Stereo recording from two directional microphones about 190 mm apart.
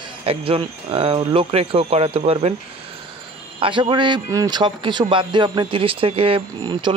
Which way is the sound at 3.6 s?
25° right (ahead or behind).